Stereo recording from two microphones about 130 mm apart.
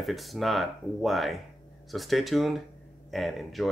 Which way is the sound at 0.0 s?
Centre (ahead or behind).